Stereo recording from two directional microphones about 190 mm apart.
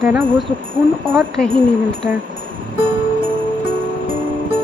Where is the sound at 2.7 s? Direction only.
25° right (ahead or behind).